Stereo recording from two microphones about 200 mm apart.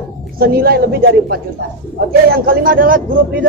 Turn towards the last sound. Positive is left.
turn(degrees=-45)  # may be behind; listen again after turning